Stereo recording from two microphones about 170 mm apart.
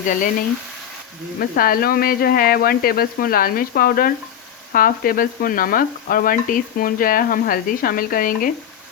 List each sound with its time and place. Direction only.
1.4 s frying: 60° left (ahead or behind)